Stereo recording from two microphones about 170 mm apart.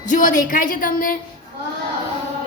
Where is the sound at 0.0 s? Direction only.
50° left (ahead or behind).